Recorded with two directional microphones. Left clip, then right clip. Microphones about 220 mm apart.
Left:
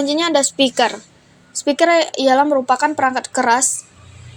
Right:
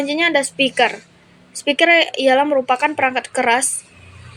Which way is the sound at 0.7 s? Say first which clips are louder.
Even; 30° left (ahead or behind).